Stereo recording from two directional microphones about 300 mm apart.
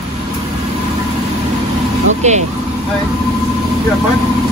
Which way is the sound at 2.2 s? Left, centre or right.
Right.